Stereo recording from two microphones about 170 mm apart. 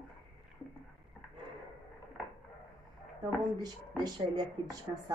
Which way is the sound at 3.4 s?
25° right (ahead or behind).